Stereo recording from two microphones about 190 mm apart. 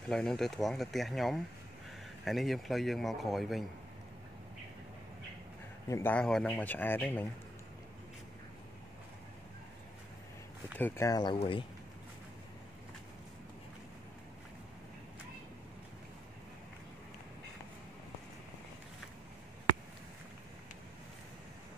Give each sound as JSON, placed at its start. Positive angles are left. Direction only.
{"t": 0.1, "sound": "speech", "side_deg": 5}
{"t": 5.9, "sound": "speech", "side_deg": 15}
{"t": 10.8, "sound": "speech", "side_deg": 10}